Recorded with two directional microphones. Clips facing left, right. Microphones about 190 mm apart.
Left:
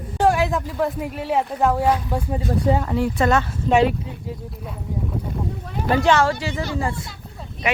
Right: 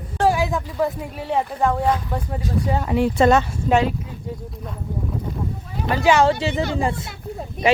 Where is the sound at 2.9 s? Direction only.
20° right (ahead or behind).